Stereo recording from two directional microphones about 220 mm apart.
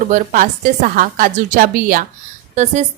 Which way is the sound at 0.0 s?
35° right (ahead or behind).